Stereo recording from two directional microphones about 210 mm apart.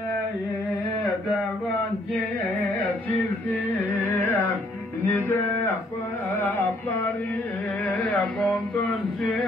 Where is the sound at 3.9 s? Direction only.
10° left (ahead or behind).